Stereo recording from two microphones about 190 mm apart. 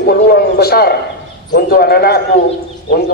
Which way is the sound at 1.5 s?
55° left (ahead or behind).